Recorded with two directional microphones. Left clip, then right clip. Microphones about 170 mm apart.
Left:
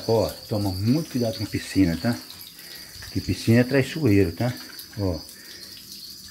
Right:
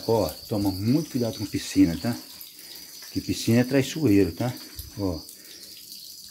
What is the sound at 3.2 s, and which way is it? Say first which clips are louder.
Speech: left 2 dB; 15° right (ahead or behind).